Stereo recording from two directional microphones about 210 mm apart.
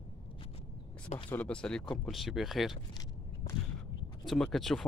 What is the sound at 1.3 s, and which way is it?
Speech, 5° left (ahead or behind).